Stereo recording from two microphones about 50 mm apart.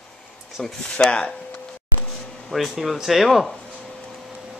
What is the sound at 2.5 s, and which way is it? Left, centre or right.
Speech, centre.